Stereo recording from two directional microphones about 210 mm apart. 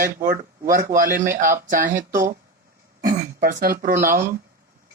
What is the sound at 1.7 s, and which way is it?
Speech, 40° right (ahead or behind).